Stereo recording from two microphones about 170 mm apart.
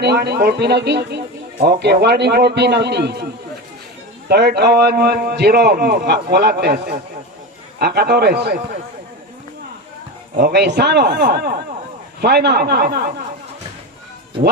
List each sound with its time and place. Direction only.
0.0 s a man's voice: 75° right (ahead or behind)
4.3 s a man's voice: 70° right (ahead or behind)
10.3 s a man's voice: 70° right (ahead or behind)